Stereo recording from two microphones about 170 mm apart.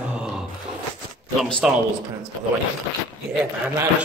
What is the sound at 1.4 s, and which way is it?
Speech, centre (ahead or behind).